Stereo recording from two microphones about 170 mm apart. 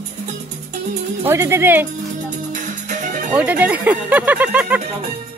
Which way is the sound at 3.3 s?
10° right (ahead or behind).